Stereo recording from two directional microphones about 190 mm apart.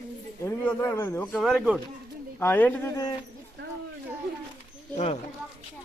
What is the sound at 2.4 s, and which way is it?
Speech, 10° left (ahead or behind).